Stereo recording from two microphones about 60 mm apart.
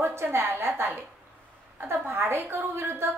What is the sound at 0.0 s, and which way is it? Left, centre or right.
Speech, right.